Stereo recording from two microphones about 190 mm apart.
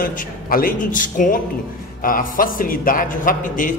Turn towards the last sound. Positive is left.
turn(degrees=45)  # may be behind; listen again after turning